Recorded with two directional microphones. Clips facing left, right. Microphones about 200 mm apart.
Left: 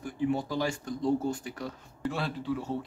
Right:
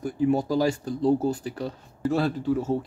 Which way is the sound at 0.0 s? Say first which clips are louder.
Right 6 dB; 40° right (ahead or behind).